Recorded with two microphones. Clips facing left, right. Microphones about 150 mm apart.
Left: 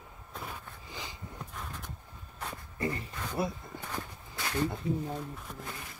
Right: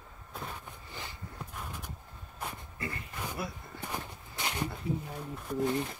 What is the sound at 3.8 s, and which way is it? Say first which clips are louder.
Walk: right 2 dB; 15° right (ahead or behind).